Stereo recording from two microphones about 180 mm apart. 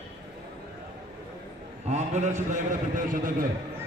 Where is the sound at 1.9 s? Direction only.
40° right (ahead or behind).